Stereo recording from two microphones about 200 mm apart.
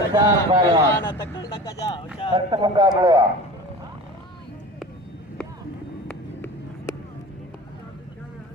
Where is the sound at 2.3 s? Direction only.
20° right (ahead or behind).